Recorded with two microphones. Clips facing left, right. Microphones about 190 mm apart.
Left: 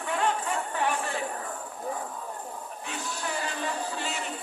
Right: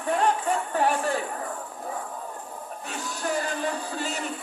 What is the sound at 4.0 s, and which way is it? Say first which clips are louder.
Music: right 3 dB; 40° right (ahead or behind).